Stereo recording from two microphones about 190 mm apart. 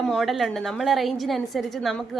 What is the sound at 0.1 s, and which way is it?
A woman's voice, centre (ahead or behind).